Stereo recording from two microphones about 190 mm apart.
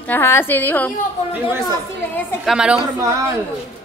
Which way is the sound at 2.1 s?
Centre (ahead or behind).